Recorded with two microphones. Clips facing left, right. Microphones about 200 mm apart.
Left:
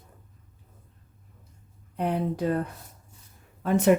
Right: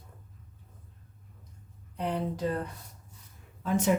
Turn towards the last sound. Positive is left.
turn(degrees=65)  # may be behind; listen again after turning